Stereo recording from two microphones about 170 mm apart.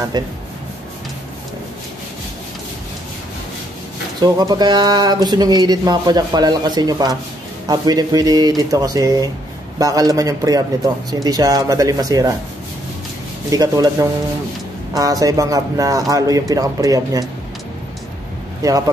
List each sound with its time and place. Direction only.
0.1 s speech: 25° right (ahead or behind)
4.2 s speech: 25° right (ahead or behind)
13.5 s speech: 20° right (ahead or behind)
18.6 s speech: 20° right (ahead or behind)